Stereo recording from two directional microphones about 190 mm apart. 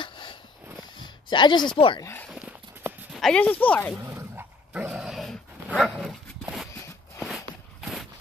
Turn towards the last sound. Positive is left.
turn(degrees=15)  # may be behind; listen again after turning